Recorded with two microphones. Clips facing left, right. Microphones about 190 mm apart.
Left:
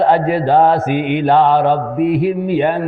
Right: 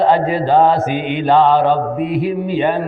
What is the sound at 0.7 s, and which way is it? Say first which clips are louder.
A man's voice: left 2 dB; 60° left (ahead or behind).